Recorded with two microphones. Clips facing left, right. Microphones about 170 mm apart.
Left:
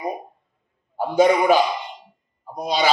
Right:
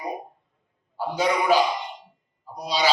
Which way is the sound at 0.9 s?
50° left (ahead or behind).